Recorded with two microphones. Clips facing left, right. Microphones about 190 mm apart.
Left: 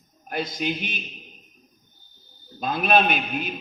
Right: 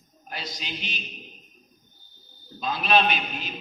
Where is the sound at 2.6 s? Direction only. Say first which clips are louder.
Left 2 dB; 55° left (ahead or behind).